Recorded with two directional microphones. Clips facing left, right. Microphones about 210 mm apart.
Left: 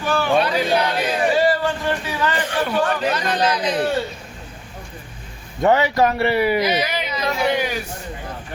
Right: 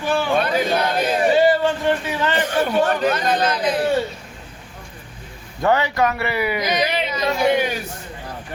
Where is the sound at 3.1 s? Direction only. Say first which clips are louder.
Right 1 dB; 50° right (ahead or behind).